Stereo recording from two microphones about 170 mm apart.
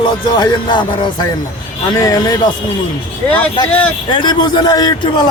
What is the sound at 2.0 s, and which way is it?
Speech, 20° left (ahead or behind).